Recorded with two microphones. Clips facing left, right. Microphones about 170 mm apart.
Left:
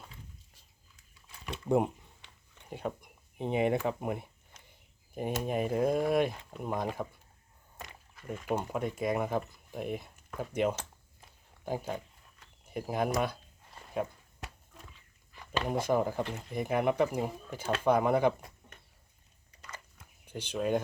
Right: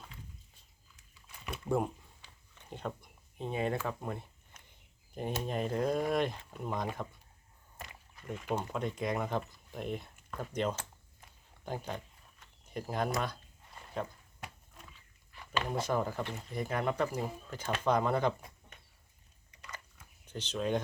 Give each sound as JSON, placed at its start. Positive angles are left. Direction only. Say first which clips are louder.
{"t": 1.7, "sound": "speech", "louder": "left 5 dB", "side_deg": -5}
{"t": 2.6, "sound": "speech", "louder": "left 3 dB", "side_deg": 10}
{"t": 8.3, "sound": "speech", "louder": "left 3 dB", "side_deg": 10}
{"t": 15.7, "sound": "speech", "louder": "left 5 dB", "side_deg": 15}
{"t": 20.2, "sound": "speech", "louder": "left 2 dB", "side_deg": 10}